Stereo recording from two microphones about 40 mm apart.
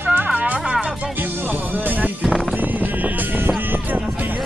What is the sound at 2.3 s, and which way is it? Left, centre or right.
Music, centre.